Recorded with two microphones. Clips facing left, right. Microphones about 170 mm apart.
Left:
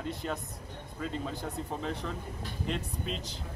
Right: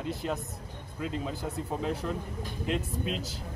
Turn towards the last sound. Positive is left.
turn(degrees=-5)  # may be behind; listen again after turning